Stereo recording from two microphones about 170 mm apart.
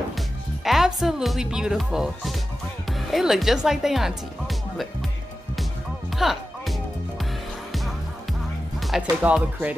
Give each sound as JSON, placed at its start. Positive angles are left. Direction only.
{"t": 0.7, "sound": "speech", "side_deg": 0}
{"t": 5.6, "sound": "music", "side_deg": 0}
{"t": 8.7, "sound": "music", "side_deg": 0}
{"t": 9.2, "sound": "speech", "side_deg": -10}